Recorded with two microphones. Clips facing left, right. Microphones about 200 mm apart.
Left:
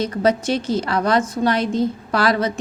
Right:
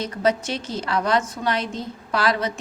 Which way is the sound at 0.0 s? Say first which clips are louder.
Left 4 dB; 35° left (ahead or behind).